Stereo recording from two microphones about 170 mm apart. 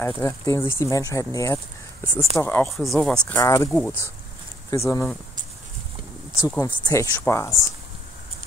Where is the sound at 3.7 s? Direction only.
5° left (ahead or behind).